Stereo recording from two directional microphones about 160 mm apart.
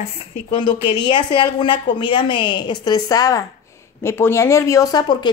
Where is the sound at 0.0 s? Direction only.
30° left (ahead or behind).